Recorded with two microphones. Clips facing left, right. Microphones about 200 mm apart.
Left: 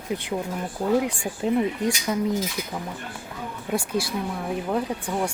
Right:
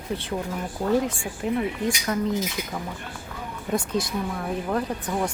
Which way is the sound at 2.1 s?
5° left (ahead or behind).